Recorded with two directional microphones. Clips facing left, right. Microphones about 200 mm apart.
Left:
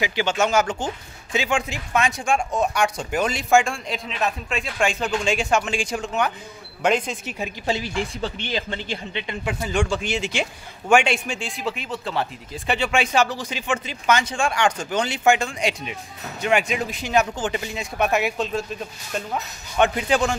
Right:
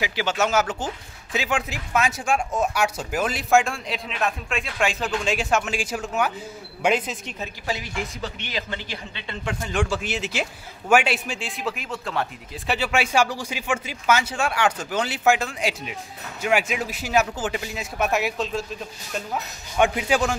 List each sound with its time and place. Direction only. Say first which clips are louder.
0.0 s a man's voice: left 2 dB; centre (ahead or behind)
7.2 s a woman's voice: left 4 dB; 15° left (ahead or behind)
7.6 s speech: left 4 dB; 30° left (ahead or behind)
9.3 s a man's voice: left 2 dB; 10° left (ahead or behind)